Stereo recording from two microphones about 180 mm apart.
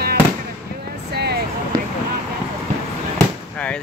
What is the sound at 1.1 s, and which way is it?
Music, 65° right (ahead or behind).